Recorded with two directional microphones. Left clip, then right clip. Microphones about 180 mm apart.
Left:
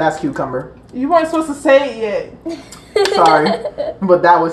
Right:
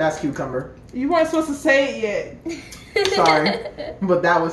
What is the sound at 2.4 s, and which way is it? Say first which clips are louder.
Speech: left 4 dB; 10° right (ahead or behind).